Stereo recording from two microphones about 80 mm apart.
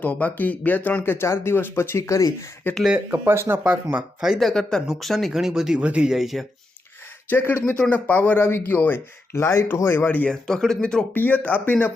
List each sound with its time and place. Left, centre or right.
0.0 s speech: centre; by 2.3 s left
3.1 s speech: right
4.2 s speech: centre
7.3 s speech: left
9.4 s speech: left
10.2 s speech: centre
11.1 s speech: left